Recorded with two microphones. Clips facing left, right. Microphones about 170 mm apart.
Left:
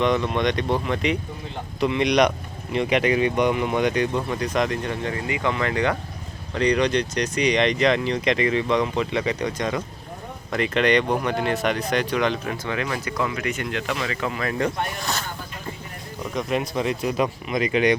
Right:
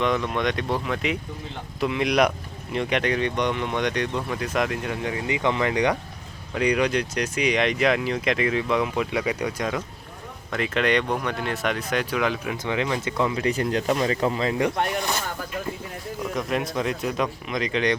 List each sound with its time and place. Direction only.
0.0 s speech: centre (ahead or behind)
12.6 s speech: 20° right (ahead or behind)
16.3 s speech: centre (ahead or behind)